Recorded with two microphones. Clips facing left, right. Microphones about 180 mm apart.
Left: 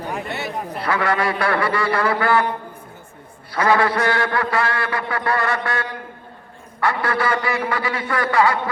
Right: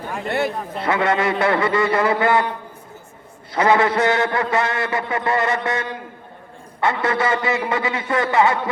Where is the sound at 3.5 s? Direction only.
20° right (ahead or behind).